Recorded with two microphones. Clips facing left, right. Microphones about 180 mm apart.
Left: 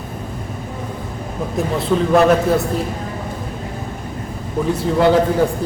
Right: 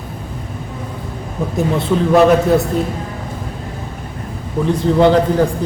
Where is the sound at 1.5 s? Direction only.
Centre (ahead or behind).